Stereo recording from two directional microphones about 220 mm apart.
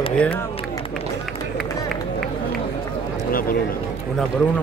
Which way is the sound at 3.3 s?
40° left (ahead or behind).